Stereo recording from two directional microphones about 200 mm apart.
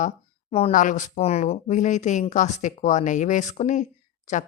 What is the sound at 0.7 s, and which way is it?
A woman's voice, 40° left (ahead or behind).